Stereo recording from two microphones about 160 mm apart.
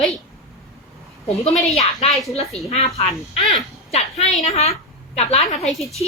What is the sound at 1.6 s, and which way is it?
A woman's voice, 45° left (ahead or behind).